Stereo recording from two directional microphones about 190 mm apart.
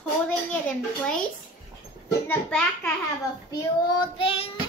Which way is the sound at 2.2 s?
5° left (ahead or behind).